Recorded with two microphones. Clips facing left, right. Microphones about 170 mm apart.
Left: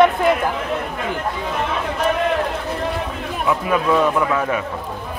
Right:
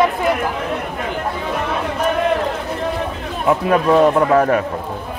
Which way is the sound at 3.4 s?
45° right (ahead or behind).